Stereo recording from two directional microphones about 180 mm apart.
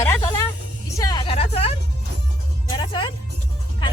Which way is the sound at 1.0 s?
25° left (ahead or behind).